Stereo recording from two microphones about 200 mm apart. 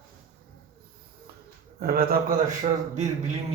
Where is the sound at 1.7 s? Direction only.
50° right (ahead or behind).